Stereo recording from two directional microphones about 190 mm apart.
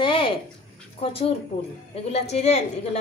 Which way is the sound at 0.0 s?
25° left (ahead or behind).